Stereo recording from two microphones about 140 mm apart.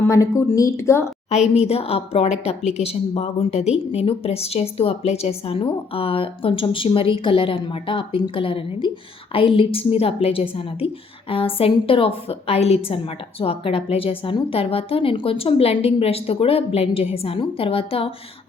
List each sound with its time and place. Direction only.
0.0 s a woman's voice: 25° left (ahead or behind)
1.3 s a woman's voice: 50° left (ahead or behind)